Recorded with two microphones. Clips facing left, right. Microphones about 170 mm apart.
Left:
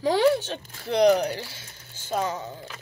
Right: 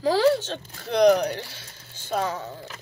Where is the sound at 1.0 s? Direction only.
10° left (ahead or behind).